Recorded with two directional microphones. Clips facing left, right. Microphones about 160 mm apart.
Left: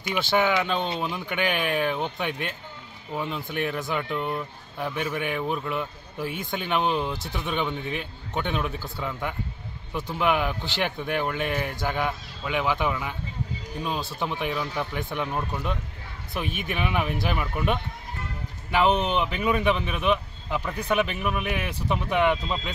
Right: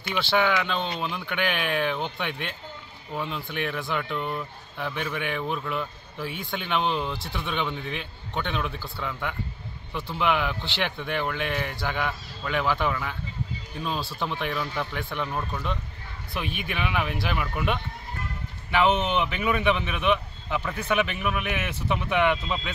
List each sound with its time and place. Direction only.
0.0 s speech: 15° left (ahead or behind)
10.1 s speech: 10° left (ahead or behind)
16.4 s speech: 45° left (ahead or behind)
16.8 s a man's voice: 5° left (ahead or behind)